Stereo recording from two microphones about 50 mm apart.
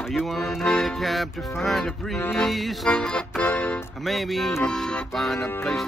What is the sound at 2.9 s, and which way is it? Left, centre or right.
Music, left.